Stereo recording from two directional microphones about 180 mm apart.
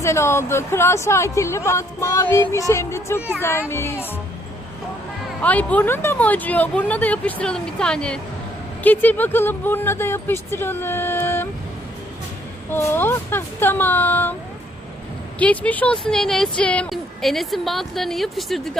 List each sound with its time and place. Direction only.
0.0 s speech: 15° left (ahead or behind)
5.4 s speech: 10° left (ahead or behind)
12.7 s speech: 10° left (ahead or behind)
15.4 s speech: 10° left (ahead or behind)